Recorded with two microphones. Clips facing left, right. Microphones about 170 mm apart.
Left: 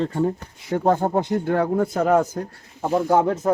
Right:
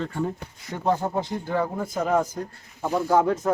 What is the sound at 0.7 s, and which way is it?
Speech, 50° left (ahead or behind).